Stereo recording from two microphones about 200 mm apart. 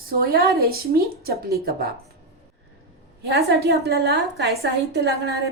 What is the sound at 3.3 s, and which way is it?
A woman's voice, 55° right (ahead or behind).